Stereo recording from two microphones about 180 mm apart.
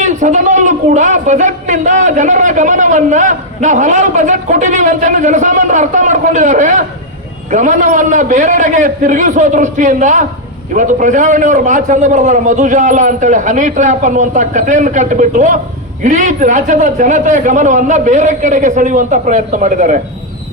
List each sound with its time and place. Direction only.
0.0 s speech: 40° right (ahead or behind)